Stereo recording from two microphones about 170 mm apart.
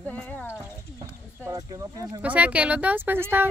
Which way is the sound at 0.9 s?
20° right (ahead or behind).